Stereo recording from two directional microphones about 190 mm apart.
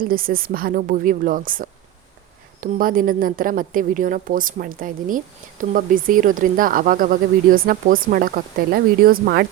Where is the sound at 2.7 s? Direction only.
45° right (ahead or behind).